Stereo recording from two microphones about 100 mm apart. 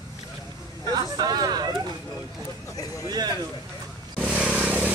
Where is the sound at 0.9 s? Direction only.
45° right (ahead or behind).